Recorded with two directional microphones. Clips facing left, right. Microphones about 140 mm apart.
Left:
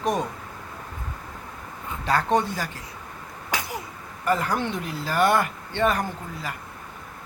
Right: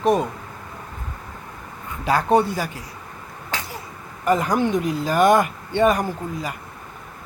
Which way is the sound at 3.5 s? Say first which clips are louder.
Left 1 dB; 15° left (ahead or behind).